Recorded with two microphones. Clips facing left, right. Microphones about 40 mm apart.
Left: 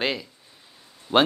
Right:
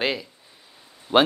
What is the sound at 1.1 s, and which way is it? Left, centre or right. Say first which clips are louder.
Speech: right 1 dB; right.